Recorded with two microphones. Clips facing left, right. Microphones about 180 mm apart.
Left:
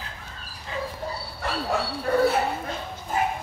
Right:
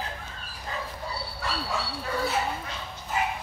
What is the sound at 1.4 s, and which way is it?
Dog, 55° left (ahead or behind).